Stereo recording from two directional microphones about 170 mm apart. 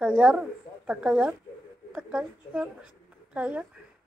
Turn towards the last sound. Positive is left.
turn(degrees=-10)  # may be behind; listen again after turning